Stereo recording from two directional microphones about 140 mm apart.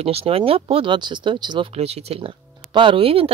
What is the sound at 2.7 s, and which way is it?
Speech, 35° right (ahead or behind).